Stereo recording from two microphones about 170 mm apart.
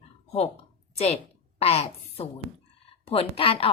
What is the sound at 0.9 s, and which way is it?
Speech, 40° left (ahead or behind).